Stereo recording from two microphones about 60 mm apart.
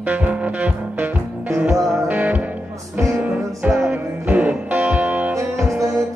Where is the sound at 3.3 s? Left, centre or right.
Centre.